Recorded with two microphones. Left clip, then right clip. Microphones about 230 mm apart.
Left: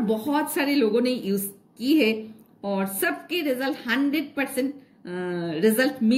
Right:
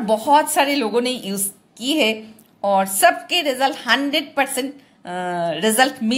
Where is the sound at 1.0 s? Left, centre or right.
Right.